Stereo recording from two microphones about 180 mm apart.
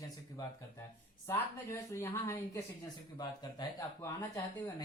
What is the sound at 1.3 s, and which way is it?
Speech, 15° left (ahead or behind).